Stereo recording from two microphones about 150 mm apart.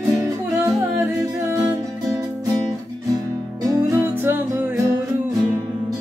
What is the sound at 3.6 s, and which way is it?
Music, 20° right (ahead or behind).